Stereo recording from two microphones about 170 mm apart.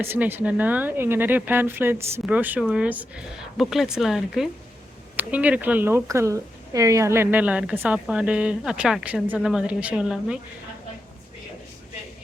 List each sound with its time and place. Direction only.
0.0 s speech: 10° right (ahead or behind)